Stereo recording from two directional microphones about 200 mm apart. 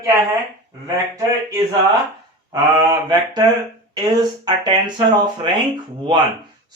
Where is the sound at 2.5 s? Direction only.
20° right (ahead or behind).